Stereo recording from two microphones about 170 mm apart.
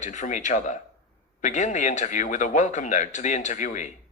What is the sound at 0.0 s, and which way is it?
A man's voice, 45° left (ahead or behind).